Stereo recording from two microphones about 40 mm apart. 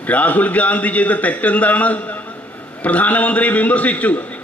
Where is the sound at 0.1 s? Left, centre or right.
Left.